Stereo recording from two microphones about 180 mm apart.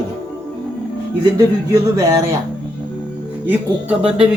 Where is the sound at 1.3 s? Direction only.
20° right (ahead or behind).